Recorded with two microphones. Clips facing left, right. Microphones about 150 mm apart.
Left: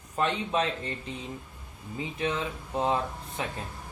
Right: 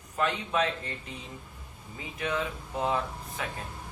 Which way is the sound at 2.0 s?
30° left (ahead or behind).